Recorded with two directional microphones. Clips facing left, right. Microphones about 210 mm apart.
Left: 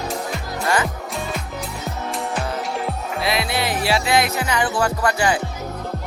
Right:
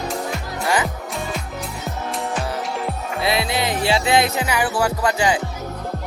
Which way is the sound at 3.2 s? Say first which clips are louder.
Right 1 dB; 25° right (ahead or behind).